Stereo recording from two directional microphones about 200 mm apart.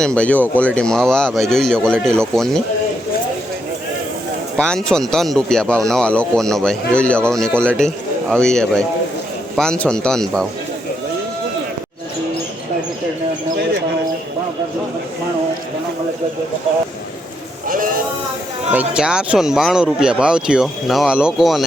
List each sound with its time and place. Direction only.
0.0 s speech: 5° left (ahead or behind)
4.5 s speech: 5° left (ahead or behind)
17.7 s sheep: 45° right (ahead or behind)
18.7 s speech: 5° right (ahead or behind)